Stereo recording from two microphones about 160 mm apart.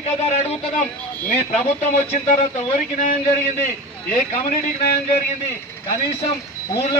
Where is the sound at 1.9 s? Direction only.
45° left (ahead or behind).